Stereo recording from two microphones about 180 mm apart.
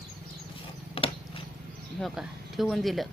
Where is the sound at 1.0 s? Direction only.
30° left (ahead or behind).